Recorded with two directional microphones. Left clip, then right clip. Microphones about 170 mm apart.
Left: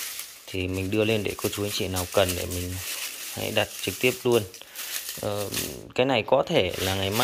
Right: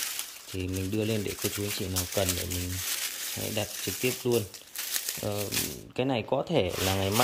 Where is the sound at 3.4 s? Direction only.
5° right (ahead or behind).